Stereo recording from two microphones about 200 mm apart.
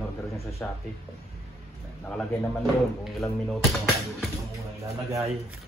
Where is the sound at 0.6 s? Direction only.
10° left (ahead or behind).